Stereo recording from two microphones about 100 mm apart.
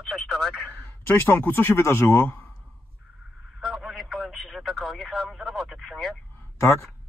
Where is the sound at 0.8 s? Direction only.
20° left (ahead or behind).